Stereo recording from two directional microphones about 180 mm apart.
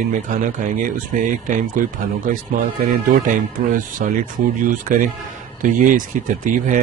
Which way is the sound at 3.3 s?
45° right (ahead or behind).